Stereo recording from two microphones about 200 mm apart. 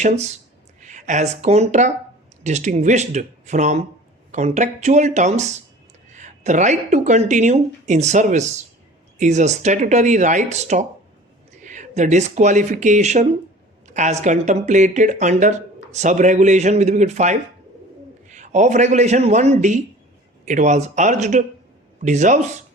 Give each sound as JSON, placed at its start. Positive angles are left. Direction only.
{"t": 0.0, "sound": "speech", "side_deg": -35}